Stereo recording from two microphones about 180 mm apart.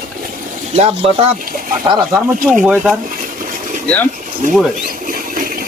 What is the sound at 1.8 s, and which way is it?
Speech, 25° right (ahead or behind).